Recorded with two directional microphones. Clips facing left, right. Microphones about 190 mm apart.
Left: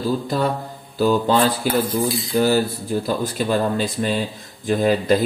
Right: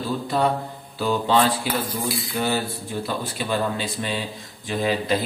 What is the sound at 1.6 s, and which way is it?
A man's voice, 45° left (ahead or behind).